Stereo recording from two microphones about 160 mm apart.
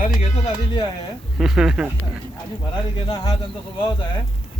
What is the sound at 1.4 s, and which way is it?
Speech, 5° right (ahead or behind).